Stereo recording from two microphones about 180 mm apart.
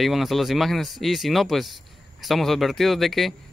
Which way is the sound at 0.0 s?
Centre (ahead or behind).